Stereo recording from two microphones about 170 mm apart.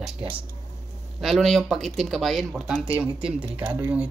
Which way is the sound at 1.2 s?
Centre (ahead or behind).